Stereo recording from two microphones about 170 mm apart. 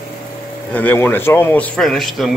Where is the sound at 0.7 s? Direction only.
10° left (ahead or behind).